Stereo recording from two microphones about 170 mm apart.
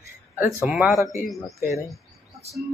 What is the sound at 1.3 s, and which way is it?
Speech, centre (ahead or behind).